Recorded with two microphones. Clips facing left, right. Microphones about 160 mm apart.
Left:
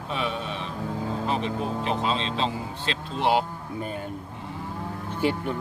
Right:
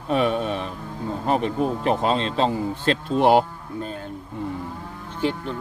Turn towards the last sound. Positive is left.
turn(degrees=10)  # may be behind; listen again after turning